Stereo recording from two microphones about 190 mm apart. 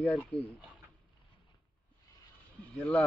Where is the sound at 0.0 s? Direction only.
5° left (ahead or behind).